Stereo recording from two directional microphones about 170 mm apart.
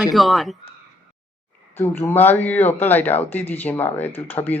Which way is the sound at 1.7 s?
15° left (ahead or behind).